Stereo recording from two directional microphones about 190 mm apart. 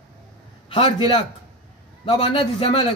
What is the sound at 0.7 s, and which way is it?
A man's voice, 30° left (ahead or behind).